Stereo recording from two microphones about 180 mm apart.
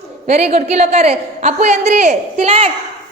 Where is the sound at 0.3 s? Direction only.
35° right (ahead or behind).